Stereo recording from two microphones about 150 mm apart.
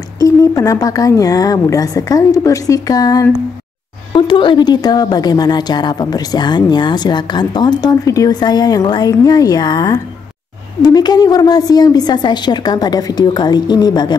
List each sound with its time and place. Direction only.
0.2 s a woman's voice: 25° left (ahead or behind)